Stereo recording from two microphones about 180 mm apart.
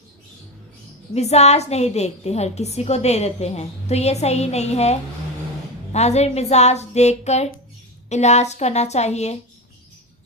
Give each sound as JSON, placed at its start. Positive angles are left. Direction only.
{"t": 1.1, "sound": "a woman's voice", "side_deg": 35}